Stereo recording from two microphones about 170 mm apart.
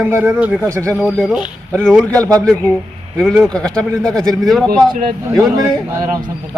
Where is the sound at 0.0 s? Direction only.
10° right (ahead or behind).